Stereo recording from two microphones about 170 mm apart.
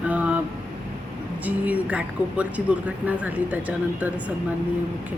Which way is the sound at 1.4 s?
10° right (ahead or behind).